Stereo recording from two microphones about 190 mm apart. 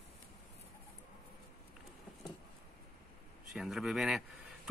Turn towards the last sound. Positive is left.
turn(degrees=0)  # may be behind; listen again after turning